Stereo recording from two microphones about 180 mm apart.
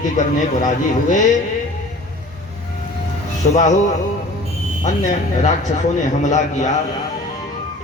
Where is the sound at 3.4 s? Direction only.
40° left (ahead or behind).